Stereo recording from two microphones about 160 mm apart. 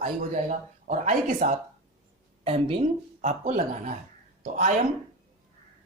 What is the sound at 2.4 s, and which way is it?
Speech, 35° right (ahead or behind).